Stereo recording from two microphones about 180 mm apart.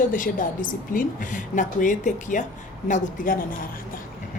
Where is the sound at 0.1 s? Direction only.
50° left (ahead or behind).